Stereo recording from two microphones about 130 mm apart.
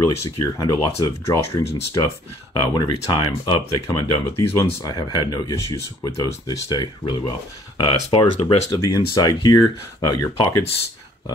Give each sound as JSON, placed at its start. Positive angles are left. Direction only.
{"t": 0.0, "sound": "speech", "side_deg": 25}
{"t": 7.9, "sound": "speech", "side_deg": 50}
{"t": 8.7, "sound": "speech", "side_deg": 30}
{"t": 10.3, "sound": "speech", "side_deg": 45}